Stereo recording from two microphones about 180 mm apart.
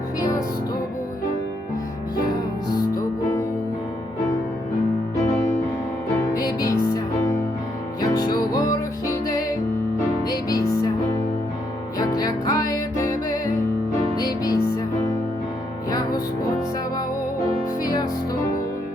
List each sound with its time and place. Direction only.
2.7 s music: 20° left (ahead or behind)
6.3 s music: 20° left (ahead or behind)
8.1 s music: 20° left (ahead or behind)
11.9 s music: 20° left (ahead or behind)
15.9 s music: 20° left (ahead or behind)
17.8 s music: 20° left (ahead or behind)